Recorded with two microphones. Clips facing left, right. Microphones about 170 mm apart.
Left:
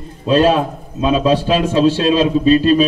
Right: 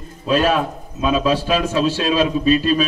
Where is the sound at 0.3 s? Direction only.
30° left (ahead or behind).